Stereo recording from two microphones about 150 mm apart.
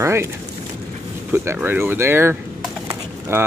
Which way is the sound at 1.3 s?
10° right (ahead or behind).